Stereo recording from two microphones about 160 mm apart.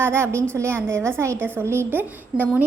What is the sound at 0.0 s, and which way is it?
A woman's voice, 15° right (ahead or behind).